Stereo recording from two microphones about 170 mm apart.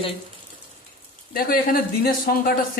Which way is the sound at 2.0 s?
60° left (ahead or behind).